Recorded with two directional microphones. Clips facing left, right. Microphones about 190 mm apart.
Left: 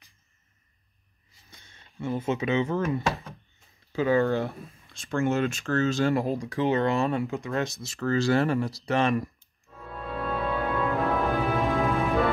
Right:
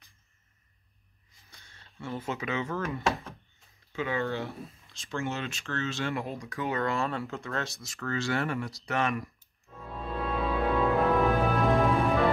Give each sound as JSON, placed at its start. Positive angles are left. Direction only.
{"t": 1.5, "sound": "speech", "side_deg": 20}
{"t": 3.9, "sound": "speech", "side_deg": 40}
{"t": 10.2, "sound": "music", "side_deg": 0}